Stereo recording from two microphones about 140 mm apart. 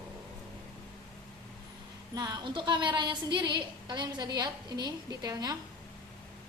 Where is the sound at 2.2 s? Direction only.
30° right (ahead or behind).